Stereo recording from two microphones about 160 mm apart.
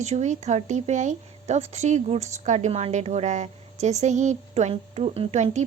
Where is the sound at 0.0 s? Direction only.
45° right (ahead or behind).